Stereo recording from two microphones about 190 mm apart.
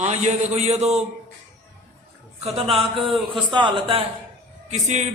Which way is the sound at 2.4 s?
30° right (ahead or behind).